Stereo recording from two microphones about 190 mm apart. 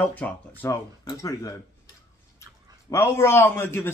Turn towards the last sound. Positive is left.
turn(degrees=10)  # may be behind; listen again after turning